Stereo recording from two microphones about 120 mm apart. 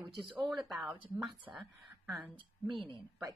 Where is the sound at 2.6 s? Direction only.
40° right (ahead or behind).